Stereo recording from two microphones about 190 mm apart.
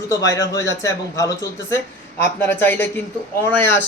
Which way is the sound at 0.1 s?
15° left (ahead or behind).